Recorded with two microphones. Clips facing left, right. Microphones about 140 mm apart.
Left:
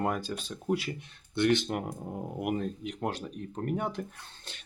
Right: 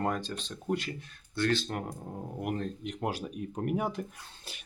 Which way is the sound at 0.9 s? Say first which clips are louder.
Left 3 dB; 25° left (ahead or behind).